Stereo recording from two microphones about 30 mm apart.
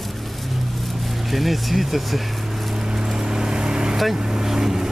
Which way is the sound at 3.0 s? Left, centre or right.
Centre.